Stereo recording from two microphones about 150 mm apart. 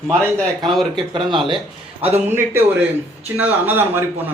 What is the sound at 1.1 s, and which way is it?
Speech, 35° right (ahead or behind).